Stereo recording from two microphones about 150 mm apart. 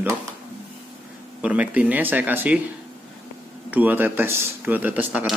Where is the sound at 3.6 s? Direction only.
10° right (ahead or behind).